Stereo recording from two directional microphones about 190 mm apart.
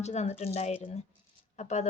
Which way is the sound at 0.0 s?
35° left (ahead or behind).